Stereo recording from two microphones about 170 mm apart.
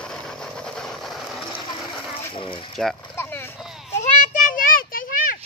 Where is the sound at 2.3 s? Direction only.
30° left (ahead or behind).